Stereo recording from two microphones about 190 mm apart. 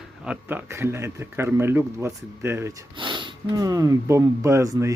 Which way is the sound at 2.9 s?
25° right (ahead or behind).